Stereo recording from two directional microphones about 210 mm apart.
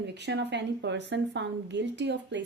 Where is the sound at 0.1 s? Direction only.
55° right (ahead or behind).